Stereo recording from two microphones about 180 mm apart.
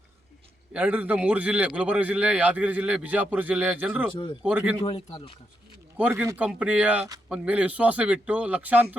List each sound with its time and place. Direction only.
0.7 s a man's voice: 10° right (ahead or behind)
4.1 s speech: 30° left (ahead or behind)
4.4 s a man's voice: 5° right (ahead or behind)
4.8 s speech: 35° left (ahead or behind)
6.0 s a man's voice: 10° right (ahead or behind)